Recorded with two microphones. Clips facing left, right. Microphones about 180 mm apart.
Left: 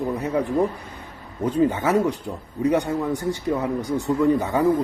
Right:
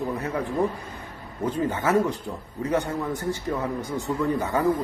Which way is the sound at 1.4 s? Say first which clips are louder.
Left 4 dB; 15° left (ahead or behind).